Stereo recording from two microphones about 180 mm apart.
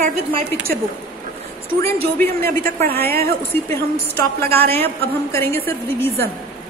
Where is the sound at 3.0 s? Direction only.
60° right (ahead or behind).